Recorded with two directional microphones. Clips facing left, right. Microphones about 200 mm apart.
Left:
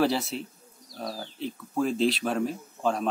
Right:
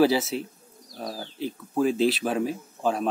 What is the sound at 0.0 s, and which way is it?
Speech, centre (ahead or behind).